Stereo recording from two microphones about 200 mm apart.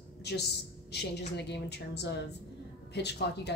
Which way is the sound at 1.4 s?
55° left (ahead or behind).